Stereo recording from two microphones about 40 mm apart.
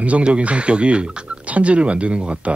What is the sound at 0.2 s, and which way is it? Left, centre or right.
Speech, right.